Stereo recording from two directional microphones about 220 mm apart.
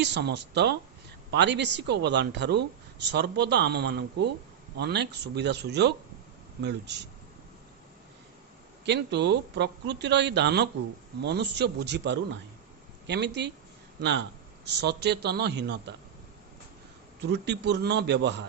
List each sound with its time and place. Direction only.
0.0 s a man's voice: 50° right (ahead or behind)
8.8 s a man's voice: 50° right (ahead or behind)
17.2 s a man's voice: 50° right (ahead or behind)